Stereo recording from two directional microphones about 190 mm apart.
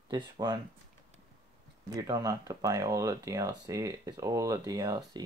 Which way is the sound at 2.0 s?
20° right (ahead or behind).